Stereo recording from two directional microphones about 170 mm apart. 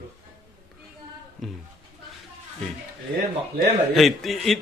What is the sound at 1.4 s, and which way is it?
Speech, centre (ahead or behind).